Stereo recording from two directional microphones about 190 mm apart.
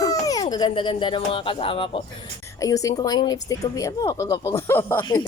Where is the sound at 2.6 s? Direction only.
20° left (ahead or behind).